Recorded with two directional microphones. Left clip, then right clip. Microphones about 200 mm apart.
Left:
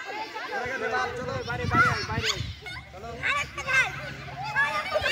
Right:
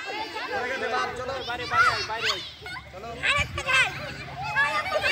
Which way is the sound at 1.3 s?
35° right (ahead or behind).